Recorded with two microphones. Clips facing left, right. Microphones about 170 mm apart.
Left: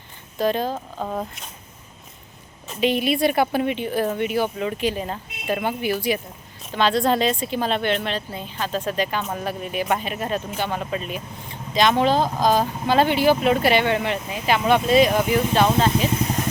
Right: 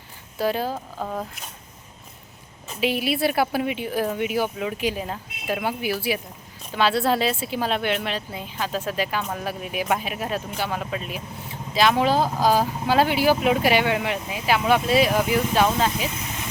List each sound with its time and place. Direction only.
0.3 s speech: 10° right (ahead or behind)
1.0 s speech: 5° left (ahead or behind)
2.6 s speech: 5° right (ahead or behind)
16.2 s vehicle: 40° left (ahead or behind)